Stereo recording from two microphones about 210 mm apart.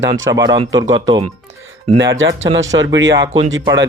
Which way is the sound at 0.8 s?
70° right (ahead or behind).